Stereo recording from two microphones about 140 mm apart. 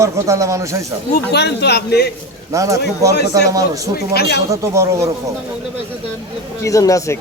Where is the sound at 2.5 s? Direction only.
25° right (ahead or behind).